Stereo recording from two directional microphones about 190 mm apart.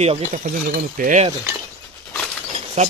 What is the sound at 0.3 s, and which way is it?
Speech, 45° right (ahead or behind).